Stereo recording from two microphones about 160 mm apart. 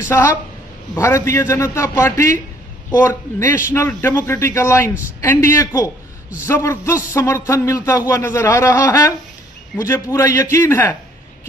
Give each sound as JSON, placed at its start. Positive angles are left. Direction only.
{"t": 0.1, "sound": "a man's voice", "side_deg": 15}